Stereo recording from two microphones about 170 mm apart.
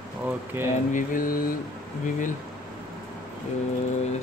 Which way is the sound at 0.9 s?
50° left (ahead or behind).